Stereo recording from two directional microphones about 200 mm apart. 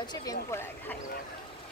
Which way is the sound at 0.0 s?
20° left (ahead or behind).